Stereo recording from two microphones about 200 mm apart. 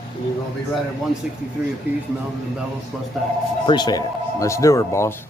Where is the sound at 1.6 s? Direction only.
5° right (ahead or behind).